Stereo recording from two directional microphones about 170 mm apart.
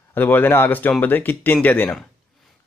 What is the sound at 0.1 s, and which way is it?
Speech, 10° left (ahead or behind).